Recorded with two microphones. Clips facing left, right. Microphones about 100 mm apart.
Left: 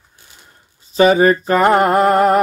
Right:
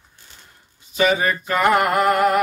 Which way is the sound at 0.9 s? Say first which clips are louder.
Left 8 dB; 35° left (ahead or behind).